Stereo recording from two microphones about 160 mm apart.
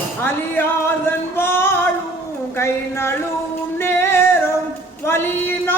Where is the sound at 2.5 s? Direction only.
15° left (ahead or behind).